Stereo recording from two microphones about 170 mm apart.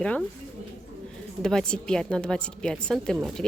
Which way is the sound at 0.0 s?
5° left (ahead or behind).